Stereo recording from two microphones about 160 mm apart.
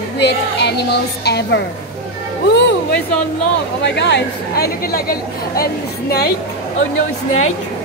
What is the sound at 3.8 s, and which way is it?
Speech, 90° left.